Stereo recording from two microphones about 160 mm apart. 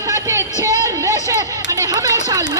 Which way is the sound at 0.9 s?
20° right (ahead or behind).